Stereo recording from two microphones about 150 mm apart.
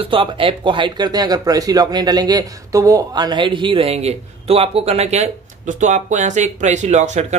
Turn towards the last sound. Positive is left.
turn(degrees=-50)  # may be behind; listen again after turning